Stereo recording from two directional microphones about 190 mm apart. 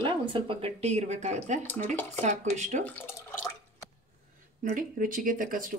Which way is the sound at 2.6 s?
40° right (ahead or behind).